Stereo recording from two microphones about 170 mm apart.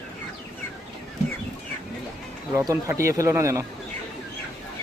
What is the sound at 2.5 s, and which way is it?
Speech, 15° right (ahead or behind).